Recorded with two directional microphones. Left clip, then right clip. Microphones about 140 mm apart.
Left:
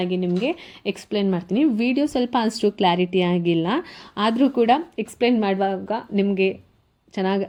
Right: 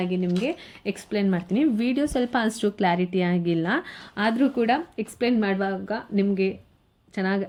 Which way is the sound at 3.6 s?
5° left (ahead or behind).